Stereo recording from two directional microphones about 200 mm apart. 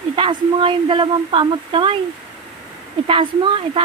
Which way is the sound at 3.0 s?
25° right (ahead or behind).